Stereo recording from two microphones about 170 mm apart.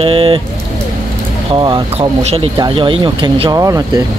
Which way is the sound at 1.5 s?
30° right (ahead or behind).